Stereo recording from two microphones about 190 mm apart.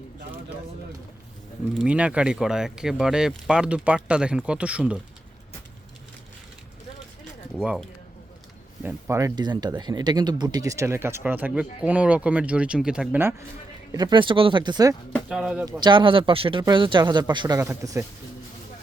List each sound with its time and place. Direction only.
1.8 s speech: 5° right (ahead or behind)
7.6 s speech: centre (ahead or behind)
13.9 s speech: 25° right (ahead or behind)
15.3 s speech: 5° right (ahead or behind)
15.8 s speech: 25° right (ahead or behind)